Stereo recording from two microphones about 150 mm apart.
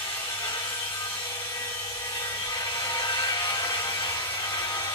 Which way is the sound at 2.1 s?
25° left (ahead or behind).